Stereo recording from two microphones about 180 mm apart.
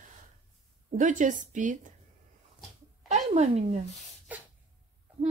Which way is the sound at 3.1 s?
40° right (ahead or behind).